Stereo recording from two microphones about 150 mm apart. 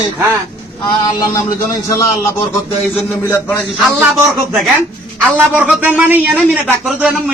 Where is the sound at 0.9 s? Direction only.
25° left (ahead or behind).